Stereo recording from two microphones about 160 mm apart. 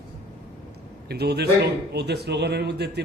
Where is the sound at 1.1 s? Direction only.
90° right.